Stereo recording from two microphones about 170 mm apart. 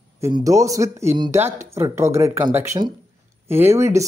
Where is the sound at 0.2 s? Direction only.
20° right (ahead or behind).